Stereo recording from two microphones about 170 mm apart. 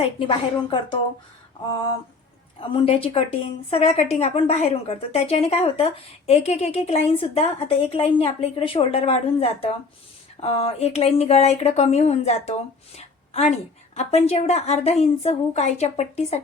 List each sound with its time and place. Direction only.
0.0 s a woman's voice: 30° left (ahead or behind)
2.6 s a woman's voice: 30° left (ahead or behind)